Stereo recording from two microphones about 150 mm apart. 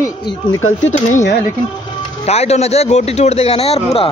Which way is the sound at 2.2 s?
45° left (ahead or behind).